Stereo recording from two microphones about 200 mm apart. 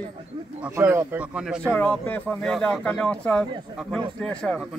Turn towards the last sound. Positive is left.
turn(degrees=5)  # may be behind; listen again after turning